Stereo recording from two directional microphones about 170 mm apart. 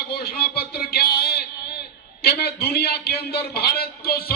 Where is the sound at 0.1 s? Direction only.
70° left (ahead or behind).